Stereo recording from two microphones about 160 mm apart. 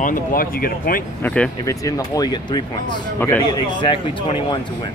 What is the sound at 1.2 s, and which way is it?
Speech, 5° left (ahead or behind).